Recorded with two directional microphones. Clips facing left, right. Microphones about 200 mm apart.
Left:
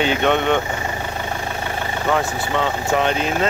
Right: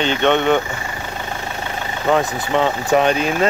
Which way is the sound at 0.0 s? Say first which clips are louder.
Right 1 dB; 5° left (ahead or behind).